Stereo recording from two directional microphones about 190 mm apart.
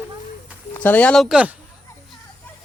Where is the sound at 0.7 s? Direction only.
10° left (ahead or behind).